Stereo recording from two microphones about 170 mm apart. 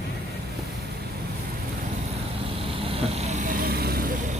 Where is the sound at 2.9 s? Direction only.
40° right (ahead or behind).